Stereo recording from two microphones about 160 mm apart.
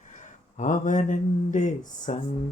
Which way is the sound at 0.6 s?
50° left (ahead or behind).